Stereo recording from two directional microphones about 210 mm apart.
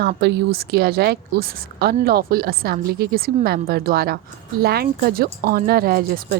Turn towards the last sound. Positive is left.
turn(degrees=-45)  # may be behind; listen again after turning